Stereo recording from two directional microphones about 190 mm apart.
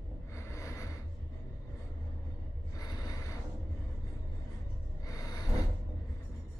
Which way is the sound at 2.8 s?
20° left (ahead or behind).